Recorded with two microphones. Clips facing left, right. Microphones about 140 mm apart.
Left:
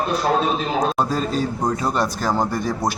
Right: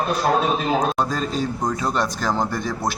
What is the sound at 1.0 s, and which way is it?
Speech, 10° left (ahead or behind).